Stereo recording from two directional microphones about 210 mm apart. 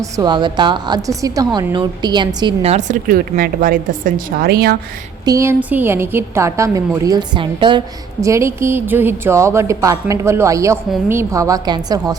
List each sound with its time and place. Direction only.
0.0 s a woman's voice: 20° right (ahead or behind); by 4.8 s 50° right (ahead or behind)
5.2 s a woman's voice: 15° right (ahead or behind)